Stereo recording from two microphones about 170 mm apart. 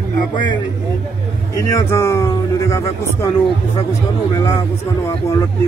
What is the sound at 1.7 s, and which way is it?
Speech, 15° left (ahead or behind).